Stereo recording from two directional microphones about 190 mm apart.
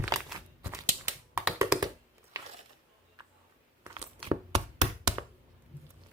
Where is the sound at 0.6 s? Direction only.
15° right (ahead or behind).